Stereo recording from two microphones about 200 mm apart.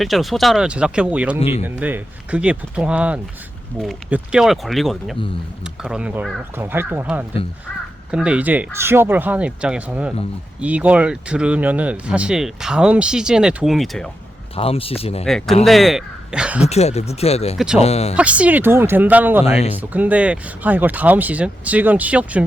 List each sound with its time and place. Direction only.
0.0 s speech: centre (ahead or behind)
1.4 s speech: 30° left (ahead or behind)
1.8 s speech: 5° right (ahead or behind)
14.5 s speech: 30° left (ahead or behind)
15.3 s speech: centre (ahead or behind)
16.6 s speech: 30° left (ahead or behind)
18.1 s speech: 5° right (ahead or behind)
19.5 s speech: 30° left (ahead or behind)
19.8 s speech: 10° right (ahead or behind)